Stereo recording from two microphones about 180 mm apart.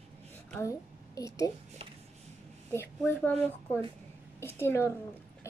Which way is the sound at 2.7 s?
10° left (ahead or behind).